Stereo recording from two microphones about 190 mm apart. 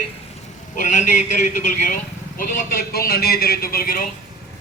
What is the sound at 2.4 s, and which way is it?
A man's voice, 45° left (ahead or behind).